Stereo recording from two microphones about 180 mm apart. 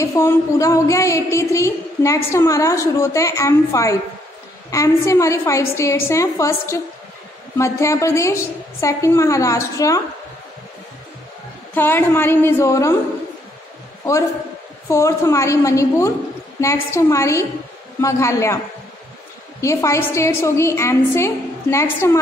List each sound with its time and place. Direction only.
0.0 s a woman's voice: 15° left (ahead or behind)
11.7 s a woman's voice: 10° left (ahead or behind)
14.9 s a woman's voice: 15° left (ahead or behind)
19.6 s a woman's voice: 15° left (ahead or behind)